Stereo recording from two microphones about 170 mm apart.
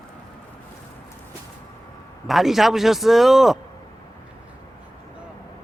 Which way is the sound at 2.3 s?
Centre (ahead or behind).